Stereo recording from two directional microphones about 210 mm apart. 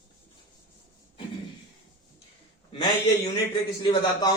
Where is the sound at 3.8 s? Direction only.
20° left (ahead or behind).